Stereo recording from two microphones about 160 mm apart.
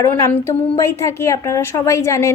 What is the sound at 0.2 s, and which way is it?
Speech, 15° left (ahead or behind).